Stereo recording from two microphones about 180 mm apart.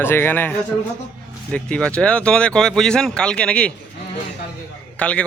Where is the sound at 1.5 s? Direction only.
5° left (ahead or behind).